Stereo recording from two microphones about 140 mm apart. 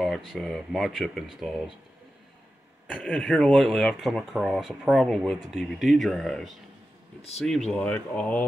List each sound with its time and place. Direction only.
0.0 s speech: centre (ahead or behind)
2.9 s speech: 5° left (ahead or behind)